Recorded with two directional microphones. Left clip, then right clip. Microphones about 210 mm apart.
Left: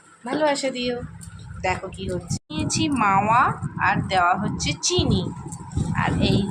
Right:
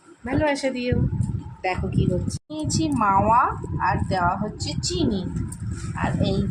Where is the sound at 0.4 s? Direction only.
10° right (ahead or behind).